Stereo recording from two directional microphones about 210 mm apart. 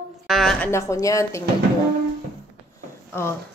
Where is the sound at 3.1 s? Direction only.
10° left (ahead or behind).